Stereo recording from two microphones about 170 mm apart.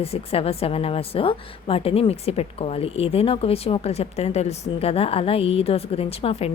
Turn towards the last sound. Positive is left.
turn(degrees=35)  # may be behind; listen again after turning